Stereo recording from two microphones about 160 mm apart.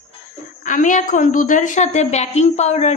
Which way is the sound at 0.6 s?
55° left (ahead or behind).